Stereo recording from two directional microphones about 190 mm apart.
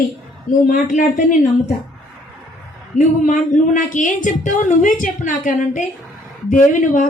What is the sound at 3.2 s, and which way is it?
Speech, 40° left (ahead or behind).